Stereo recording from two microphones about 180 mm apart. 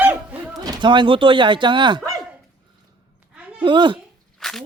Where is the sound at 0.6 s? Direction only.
25° right (ahead or behind).